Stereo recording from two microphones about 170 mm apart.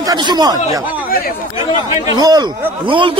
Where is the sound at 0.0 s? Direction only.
25° right (ahead or behind).